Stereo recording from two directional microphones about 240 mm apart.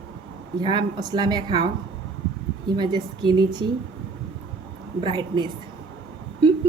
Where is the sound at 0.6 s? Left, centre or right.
Centre.